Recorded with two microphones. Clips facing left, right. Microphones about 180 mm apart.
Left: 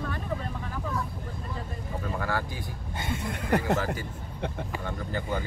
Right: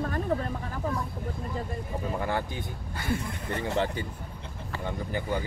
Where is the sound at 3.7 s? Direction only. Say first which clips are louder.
Right 1 dB; 25° right (ahead or behind).